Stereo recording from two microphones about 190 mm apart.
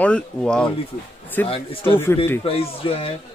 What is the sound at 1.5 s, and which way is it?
Speech, 30° left (ahead or behind).